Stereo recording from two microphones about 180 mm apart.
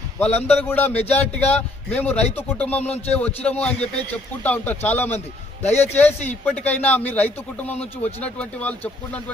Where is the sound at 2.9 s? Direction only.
35° left (ahead or behind).